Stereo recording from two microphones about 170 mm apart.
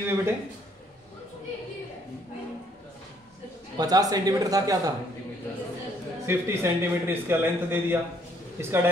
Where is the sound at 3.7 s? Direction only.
20° right (ahead or behind).